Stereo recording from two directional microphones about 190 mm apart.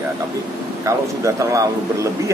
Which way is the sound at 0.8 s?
15° right (ahead or behind).